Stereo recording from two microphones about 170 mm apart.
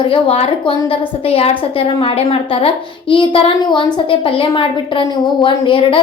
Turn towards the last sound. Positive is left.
turn(degrees=30)  # may be behind; listen again after turning